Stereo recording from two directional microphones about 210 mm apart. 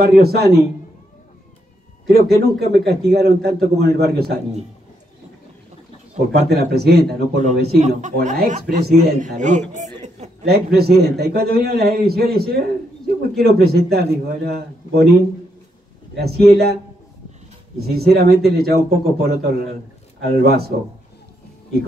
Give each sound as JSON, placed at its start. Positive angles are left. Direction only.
{"t": 0.0, "sound": "a man's voice", "side_deg": -50}
{"t": 2.0, "sound": "a man's voice", "side_deg": -50}
{"t": 6.3, "sound": "a man's voice", "side_deg": -50}
{"t": 7.4, "sound": "speech", "side_deg": -35}
{"t": 10.4, "sound": "a man's voice", "side_deg": -50}
{"t": 16.2, "sound": "a man's voice", "side_deg": -50}
{"t": 17.7, "sound": "a man's voice", "side_deg": -50}